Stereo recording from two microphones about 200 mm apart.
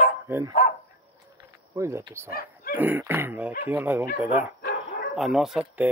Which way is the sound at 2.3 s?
50° left (ahead or behind).